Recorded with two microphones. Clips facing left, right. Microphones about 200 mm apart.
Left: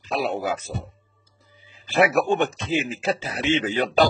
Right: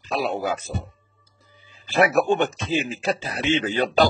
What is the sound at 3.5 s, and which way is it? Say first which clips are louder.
Speech: even; 20° left (ahead or behind).